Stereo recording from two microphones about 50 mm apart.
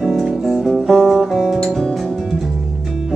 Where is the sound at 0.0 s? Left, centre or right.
Centre.